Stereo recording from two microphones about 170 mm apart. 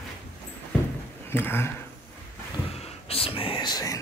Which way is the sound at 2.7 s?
35° left (ahead or behind).